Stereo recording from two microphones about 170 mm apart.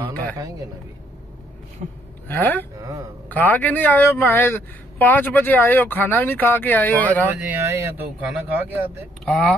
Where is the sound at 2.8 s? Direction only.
20° right (ahead or behind).